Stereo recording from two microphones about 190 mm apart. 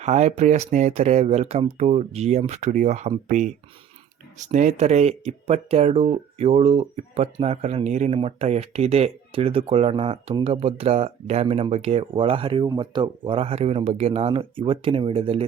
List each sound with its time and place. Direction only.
0.0 s speech: 35° right (ahead or behind)